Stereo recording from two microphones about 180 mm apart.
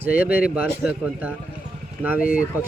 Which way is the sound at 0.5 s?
5° right (ahead or behind).